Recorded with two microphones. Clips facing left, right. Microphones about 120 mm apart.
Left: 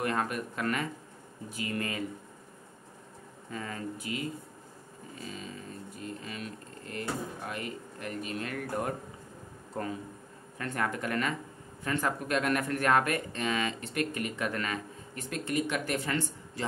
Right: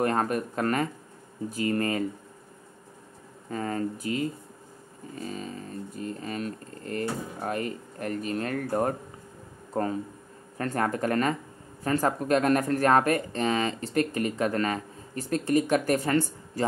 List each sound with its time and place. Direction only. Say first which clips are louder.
0.0 s speech: right 6 dB; 40° right (ahead or behind)
3.4 s speech: right 8 dB; 40° right (ahead or behind)
10.6 s speech: right 6 dB; 40° right (ahead or behind)